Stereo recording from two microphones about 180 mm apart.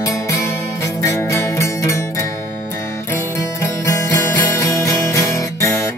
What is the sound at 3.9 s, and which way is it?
Music, 15° left (ahead or behind).